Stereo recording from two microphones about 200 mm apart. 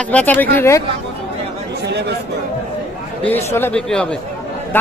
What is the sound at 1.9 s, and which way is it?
Speech, 55° right (ahead or behind).